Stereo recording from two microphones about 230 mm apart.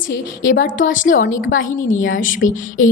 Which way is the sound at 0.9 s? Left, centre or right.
Left.